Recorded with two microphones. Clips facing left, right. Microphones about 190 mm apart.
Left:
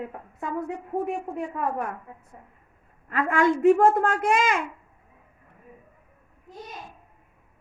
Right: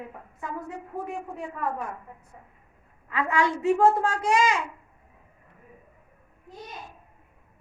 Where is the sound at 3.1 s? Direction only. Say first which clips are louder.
Left 3 dB; 50° left (ahead or behind).